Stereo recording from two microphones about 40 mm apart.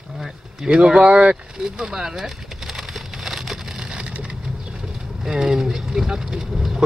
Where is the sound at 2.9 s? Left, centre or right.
Centre.